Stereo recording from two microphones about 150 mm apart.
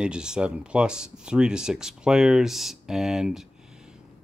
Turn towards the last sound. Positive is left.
turn(degrees=-5)  # may be behind; listen again after turning